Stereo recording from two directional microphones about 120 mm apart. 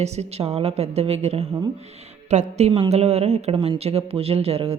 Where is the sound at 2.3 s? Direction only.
70° right (ahead or behind); by 4.8 s 55° right (ahead or behind).